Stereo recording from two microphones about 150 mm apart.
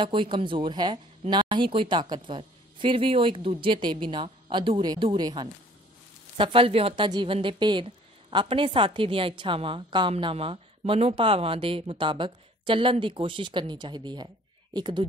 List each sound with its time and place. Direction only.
0.0 s a woman's voice: 35° right (ahead or behind)